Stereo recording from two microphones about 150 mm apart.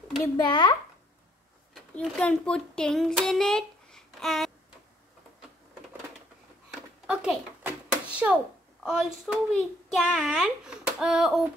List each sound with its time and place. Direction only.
0.5 s a child's voice: 30° left (ahead or behind)
2.0 s a child's voice: 5° left (ahead or behind)
6.7 s a sound: 5° right (ahead or behind)
8.8 s a child's voice: 5° right (ahead or behind)